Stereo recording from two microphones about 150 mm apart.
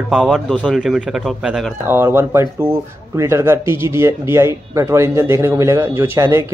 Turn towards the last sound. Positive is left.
turn(degrees=-20)  # may be behind; listen again after turning